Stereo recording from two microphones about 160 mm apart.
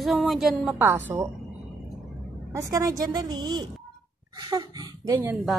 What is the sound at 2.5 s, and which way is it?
A woman's voice, 20° right (ahead or behind).